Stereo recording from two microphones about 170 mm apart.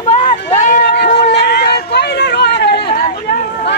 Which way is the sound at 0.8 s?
75° left (ahead or behind).